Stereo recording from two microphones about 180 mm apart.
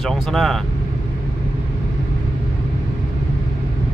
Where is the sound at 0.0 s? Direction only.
Centre (ahead or behind).